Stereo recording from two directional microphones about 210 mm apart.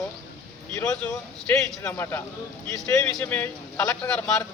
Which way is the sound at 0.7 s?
15° left (ahead or behind).